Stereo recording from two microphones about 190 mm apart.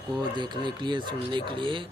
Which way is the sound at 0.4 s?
25° right (ahead or behind).